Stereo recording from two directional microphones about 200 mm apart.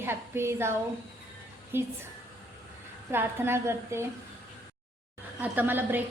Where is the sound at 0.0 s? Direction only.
10° right (ahead or behind).